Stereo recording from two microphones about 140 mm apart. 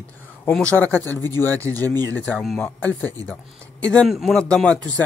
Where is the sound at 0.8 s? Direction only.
15° left (ahead or behind).